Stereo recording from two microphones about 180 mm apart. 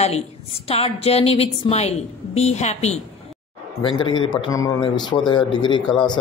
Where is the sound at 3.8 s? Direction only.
25° left (ahead or behind).